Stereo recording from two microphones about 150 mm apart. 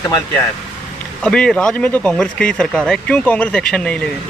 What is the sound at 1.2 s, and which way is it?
Speech, 5° left (ahead or behind).